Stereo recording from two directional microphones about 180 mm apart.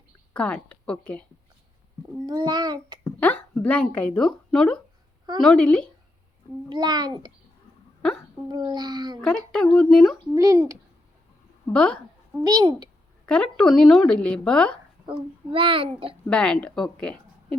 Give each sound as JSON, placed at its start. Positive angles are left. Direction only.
{"t": 0.3, "sound": "a woman's voice", "side_deg": 5}
{"t": 2.2, "sound": "a child's voice", "side_deg": -25}
{"t": 3.0, "sound": "speech", "side_deg": 10}
{"t": 6.7, "sound": "a child's voice", "side_deg": -25}
{"t": 8.4, "sound": "a child's voice", "side_deg": -20}
{"t": 9.5, "sound": "speech", "side_deg": 5}
{"t": 10.3, "sound": "a woman's voice", "side_deg": -20}
{"t": 11.7, "sound": "speech", "side_deg": 5}
{"t": 12.4, "sound": "a child's voice", "side_deg": -20}
{"t": 13.2, "sound": "speech", "side_deg": 5}
{"t": 15.0, "sound": "a child's voice", "side_deg": -30}
{"t": 16.2, "sound": "speech", "side_deg": 5}